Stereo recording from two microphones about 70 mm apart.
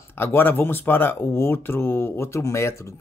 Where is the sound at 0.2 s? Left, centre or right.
Left.